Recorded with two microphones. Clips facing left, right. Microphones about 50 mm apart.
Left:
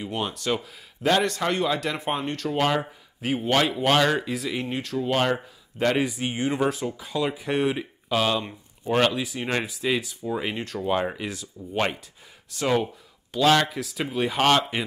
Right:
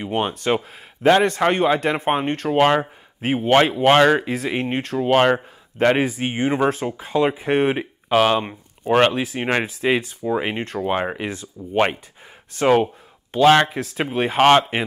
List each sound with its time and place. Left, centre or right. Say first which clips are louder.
0.0 s speech: right 6 dB; right